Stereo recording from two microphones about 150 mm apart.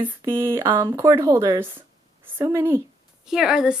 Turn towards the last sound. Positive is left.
turn(degrees=-5)  # may be behind; listen again after turning